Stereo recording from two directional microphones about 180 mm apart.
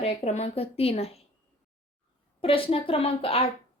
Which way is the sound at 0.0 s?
40° left (ahead or behind).